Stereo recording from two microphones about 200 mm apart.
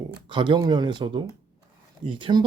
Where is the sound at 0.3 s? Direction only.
25° right (ahead or behind).